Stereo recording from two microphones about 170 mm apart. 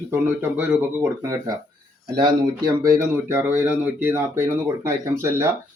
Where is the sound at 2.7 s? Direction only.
20° right (ahead or behind).